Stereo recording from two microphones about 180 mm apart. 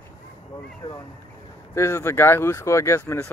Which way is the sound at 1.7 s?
15° left (ahead or behind).